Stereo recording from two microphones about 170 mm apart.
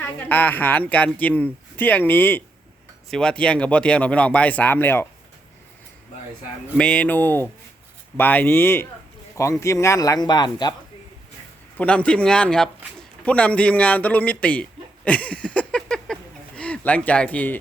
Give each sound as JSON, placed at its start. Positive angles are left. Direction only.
{"t": 0.0, "sound": "speech", "side_deg": 10}
{"t": 6.7, "sound": "speech", "side_deg": 5}
{"t": 11.8, "sound": "speech", "side_deg": 5}